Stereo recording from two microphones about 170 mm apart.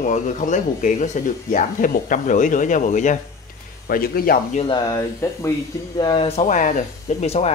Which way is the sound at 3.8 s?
60° left (ahead or behind).